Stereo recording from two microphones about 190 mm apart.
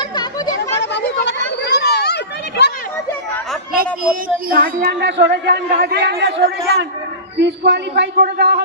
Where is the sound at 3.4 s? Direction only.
Centre (ahead or behind).